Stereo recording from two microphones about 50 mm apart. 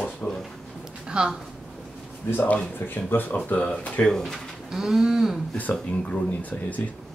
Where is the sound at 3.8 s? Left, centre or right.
Left.